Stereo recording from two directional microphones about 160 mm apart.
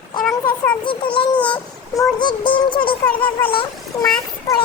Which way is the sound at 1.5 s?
30° left (ahead or behind).